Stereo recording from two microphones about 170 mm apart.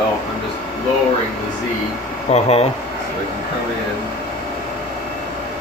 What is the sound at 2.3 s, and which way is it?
Speech, 40° left (ahead or behind).